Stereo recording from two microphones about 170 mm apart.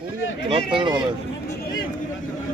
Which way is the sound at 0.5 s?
30° right (ahead or behind).